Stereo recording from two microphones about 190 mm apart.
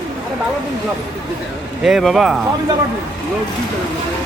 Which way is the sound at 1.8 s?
Centre (ahead or behind).